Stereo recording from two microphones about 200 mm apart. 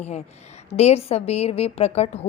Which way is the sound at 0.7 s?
30° left (ahead or behind).